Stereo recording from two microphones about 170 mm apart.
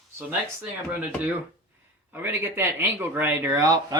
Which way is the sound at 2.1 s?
15° right (ahead or behind).